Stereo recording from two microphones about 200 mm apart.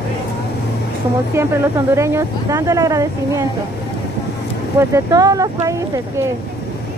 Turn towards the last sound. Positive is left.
turn(degrees=-15)  # may be behind; listen again after turning